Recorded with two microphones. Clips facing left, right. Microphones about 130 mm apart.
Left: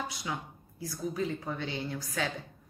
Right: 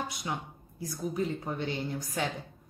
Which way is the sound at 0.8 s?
20° right (ahead or behind).